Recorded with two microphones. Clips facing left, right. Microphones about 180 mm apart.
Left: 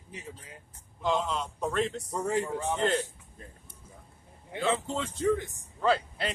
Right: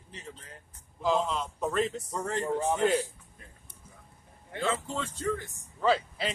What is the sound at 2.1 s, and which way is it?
Speech, 10° left (ahead or behind).